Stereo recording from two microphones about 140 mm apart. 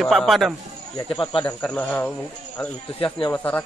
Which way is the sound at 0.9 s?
35° left (ahead or behind).